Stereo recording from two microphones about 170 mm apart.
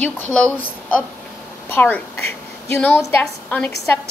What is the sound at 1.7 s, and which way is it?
A woman's voice, 10° left (ahead or behind).